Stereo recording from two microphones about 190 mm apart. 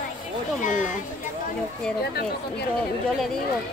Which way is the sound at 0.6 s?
45° left (ahead or behind).